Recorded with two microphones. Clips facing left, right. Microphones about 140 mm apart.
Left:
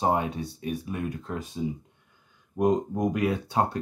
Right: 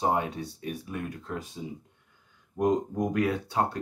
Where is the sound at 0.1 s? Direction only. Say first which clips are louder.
Left 2 dB; 20° left (ahead or behind).